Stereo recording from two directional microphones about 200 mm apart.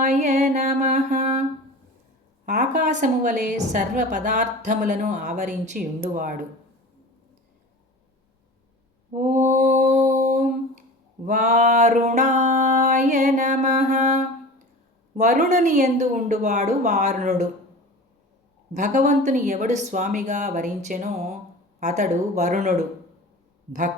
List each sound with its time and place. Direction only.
0.0 s mantra: 35° right (ahead or behind)
2.5 s a woman's voice: 40° right (ahead or behind)
9.1 s mantra: 40° right (ahead or behind)
11.3 s a sound: 35° right (ahead or behind)
15.1 s a woman's voice: 35° right (ahead or behind)
18.7 s a woman's voice: 35° right (ahead or behind)